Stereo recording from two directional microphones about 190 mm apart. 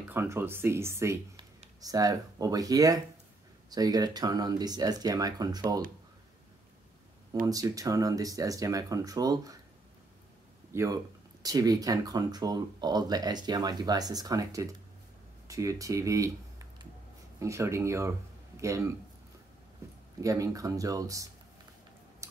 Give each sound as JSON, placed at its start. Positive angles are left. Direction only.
{"t": 0.1, "sound": "speech", "side_deg": -10}
{"t": 7.4, "sound": "speech", "side_deg": -20}
{"t": 10.7, "sound": "speech", "side_deg": -15}
{"t": 20.2, "sound": "speech", "side_deg": -15}
{"t": 22.2, "sound": "chewing", "side_deg": -15}